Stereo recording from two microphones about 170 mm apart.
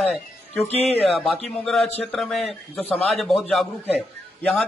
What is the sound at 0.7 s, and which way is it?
Speech, 40° left (ahead or behind).